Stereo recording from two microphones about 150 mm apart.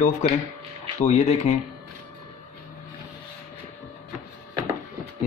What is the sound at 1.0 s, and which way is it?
Speech, 45° left (ahead or behind).